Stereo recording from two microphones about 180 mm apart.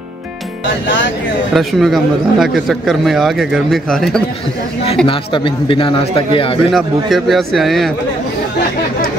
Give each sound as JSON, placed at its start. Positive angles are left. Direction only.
{"t": 1.5, "sound": "a man's voice", "side_deg": 0}
{"t": 5.0, "sound": "a man's voice", "side_deg": 30}
{"t": 6.7, "sound": "a man's voice", "side_deg": 0}